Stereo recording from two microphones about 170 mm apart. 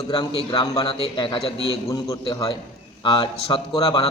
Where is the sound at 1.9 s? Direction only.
20° left (ahead or behind).